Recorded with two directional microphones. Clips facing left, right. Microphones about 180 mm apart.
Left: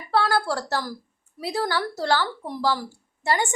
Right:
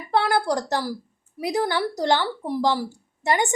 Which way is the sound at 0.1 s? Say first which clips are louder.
Right 1 dB; 20° right (ahead or behind).